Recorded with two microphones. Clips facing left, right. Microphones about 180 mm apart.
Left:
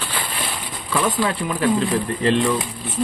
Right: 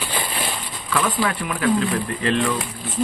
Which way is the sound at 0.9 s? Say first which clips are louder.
Left 1 dB; 25° left (ahead or behind).